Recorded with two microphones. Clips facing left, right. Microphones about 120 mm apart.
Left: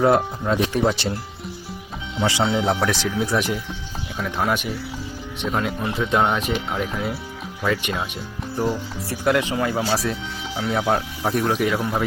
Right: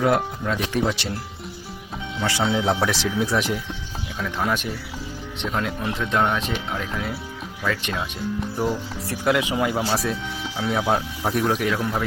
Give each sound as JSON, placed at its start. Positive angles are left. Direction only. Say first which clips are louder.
{"t": 0.0, "sound": "speech", "louder": "left 3 dB", "side_deg": 30}
{"t": 2.1, "sound": "speech", "louder": "left 4 dB", "side_deg": 20}
{"t": 2.6, "sound": "speech", "louder": "left 1 dB", "side_deg": 0}
{"t": 8.5, "sound": "speech", "louder": "left 5 dB", "side_deg": 0}
{"t": 9.5, "sound": "speech", "louder": "even", "side_deg": -10}
{"t": 9.9, "sound": "speech", "louder": "left 1 dB", "side_deg": 0}
{"t": 11.7, "sound": "speech", "louder": "left 1 dB", "side_deg": 10}